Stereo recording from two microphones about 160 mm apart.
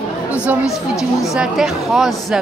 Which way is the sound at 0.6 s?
20° left (ahead or behind).